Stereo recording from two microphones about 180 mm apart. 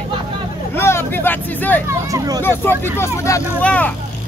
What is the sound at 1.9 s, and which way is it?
Speech, 20° right (ahead or behind).